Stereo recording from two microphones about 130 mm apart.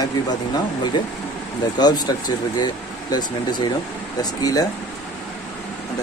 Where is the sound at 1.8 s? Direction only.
30° left (ahead or behind).